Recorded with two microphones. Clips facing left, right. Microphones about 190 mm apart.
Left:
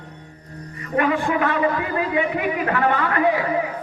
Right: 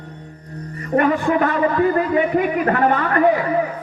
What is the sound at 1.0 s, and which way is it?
A man's voice, 40° right (ahead or behind).